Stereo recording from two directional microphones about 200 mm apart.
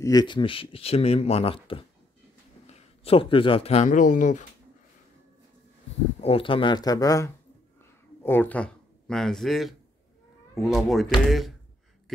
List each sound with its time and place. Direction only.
0.0 s speech: 20° left (ahead or behind); by 4.5 s 40° left (ahead or behind)
6.2 s speech: 25° left (ahead or behind); by 11.5 s centre (ahead or behind)